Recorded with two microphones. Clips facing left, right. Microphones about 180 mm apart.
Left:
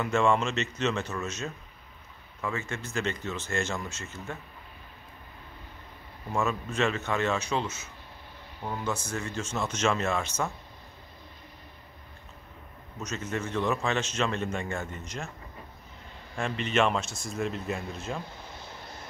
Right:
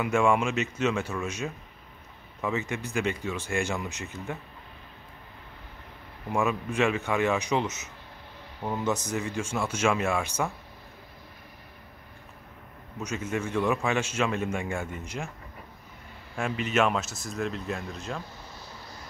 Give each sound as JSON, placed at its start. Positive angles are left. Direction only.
{"t": 0.0, "sound": "a man's voice", "side_deg": -10}
{"t": 6.3, "sound": "a man's voice", "side_deg": -15}
{"t": 12.9, "sound": "a man's voice", "side_deg": -10}
{"t": 16.3, "sound": "speech", "side_deg": -5}
{"t": 18.6, "sound": "vehicle", "side_deg": 25}